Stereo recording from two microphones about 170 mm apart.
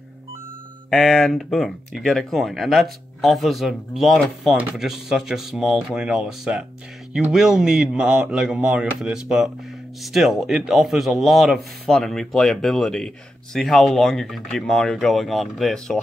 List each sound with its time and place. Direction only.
0.8 s a man's voice: centre (ahead or behind)